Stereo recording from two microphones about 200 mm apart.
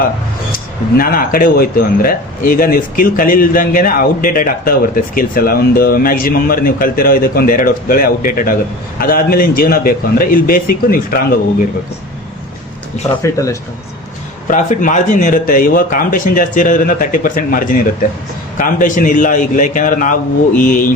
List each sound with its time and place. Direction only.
0.9 s a man's voice: 45° left (ahead or behind)
13.2 s speech: 15° left (ahead or behind)
14.4 s a man's voice: 40° left (ahead or behind)